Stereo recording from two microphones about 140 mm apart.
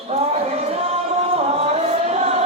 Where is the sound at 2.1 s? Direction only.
50° right (ahead or behind).